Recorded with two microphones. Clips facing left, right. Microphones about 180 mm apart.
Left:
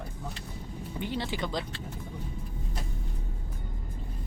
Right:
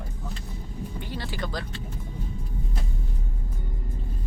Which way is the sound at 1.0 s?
20° left (ahead or behind).